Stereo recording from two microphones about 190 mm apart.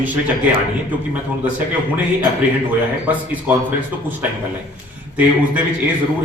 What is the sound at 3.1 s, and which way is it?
Speech, 10° right (ahead or behind).